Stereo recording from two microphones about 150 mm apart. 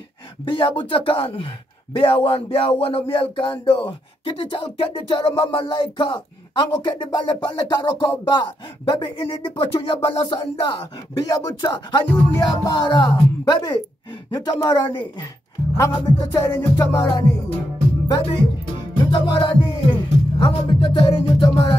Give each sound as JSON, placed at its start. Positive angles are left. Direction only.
{"t": 0.5, "sound": "speech", "side_deg": 35}
{"t": 11.2, "sound": "music", "side_deg": 25}
{"t": 19.0, "sound": "music", "side_deg": 30}